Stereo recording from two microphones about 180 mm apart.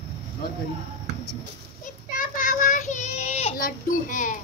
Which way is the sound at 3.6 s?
45° left (ahead or behind).